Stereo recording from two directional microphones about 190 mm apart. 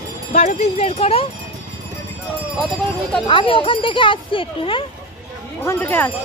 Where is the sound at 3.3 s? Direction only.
30° left (ahead or behind).